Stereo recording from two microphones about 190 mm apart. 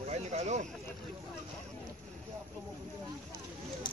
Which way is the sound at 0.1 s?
35° right (ahead or behind).